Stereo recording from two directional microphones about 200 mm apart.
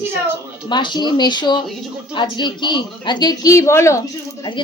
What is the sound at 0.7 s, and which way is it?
Speech, 20° left (ahead or behind).